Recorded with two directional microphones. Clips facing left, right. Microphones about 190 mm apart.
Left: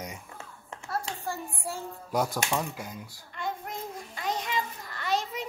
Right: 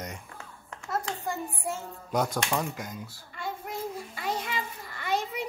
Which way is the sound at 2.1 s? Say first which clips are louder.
Right 1 dB; 5° left (ahead or behind).